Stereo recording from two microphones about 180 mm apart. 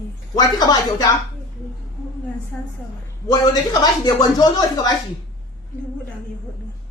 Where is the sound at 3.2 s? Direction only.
25° left (ahead or behind).